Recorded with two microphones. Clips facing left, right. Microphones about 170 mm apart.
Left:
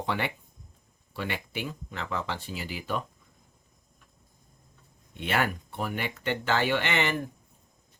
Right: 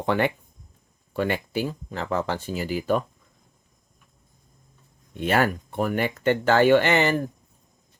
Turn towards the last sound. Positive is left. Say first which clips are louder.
# right 7 dB
turn(degrees=-40)  # may be behind; listen again after turning